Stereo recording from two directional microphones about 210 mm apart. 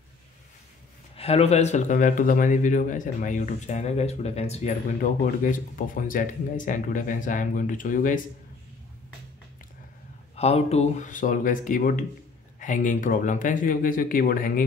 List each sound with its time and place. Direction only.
1.1 s a man's voice: 30° left (ahead or behind)
10.3 s a man's voice: 30° left (ahead or behind)